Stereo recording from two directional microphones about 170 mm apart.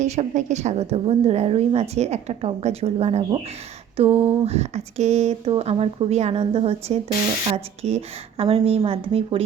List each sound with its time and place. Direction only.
0.0 s a woman's voice: 45° right (ahead or behind)